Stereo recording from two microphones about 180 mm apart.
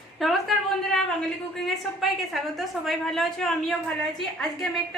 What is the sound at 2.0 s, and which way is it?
A woman's voice, centre (ahead or behind).